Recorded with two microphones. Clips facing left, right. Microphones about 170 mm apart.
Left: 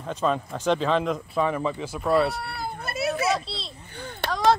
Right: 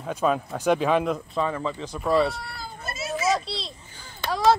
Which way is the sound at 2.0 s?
Centre (ahead or behind).